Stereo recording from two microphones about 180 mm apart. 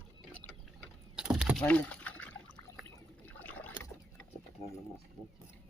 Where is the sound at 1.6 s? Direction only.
10° left (ahead or behind).